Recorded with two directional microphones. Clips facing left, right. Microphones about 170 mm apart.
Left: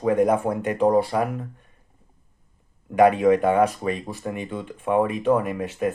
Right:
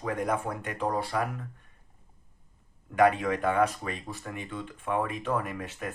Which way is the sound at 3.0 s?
15° left (ahead or behind).